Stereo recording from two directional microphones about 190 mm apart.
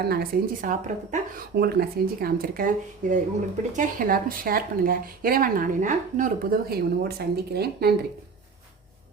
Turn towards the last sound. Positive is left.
turn(degrees=-55)  # may be behind; listen again after turning